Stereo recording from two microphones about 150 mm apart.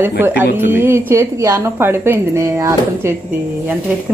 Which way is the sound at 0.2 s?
15° right (ahead or behind).